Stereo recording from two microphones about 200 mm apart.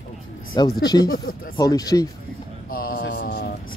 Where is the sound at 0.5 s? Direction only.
20° left (ahead or behind).